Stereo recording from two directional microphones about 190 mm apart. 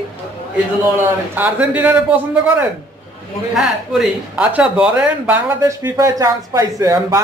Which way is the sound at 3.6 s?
5° right (ahead or behind).